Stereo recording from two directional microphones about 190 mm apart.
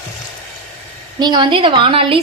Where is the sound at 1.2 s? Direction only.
25° right (ahead or behind).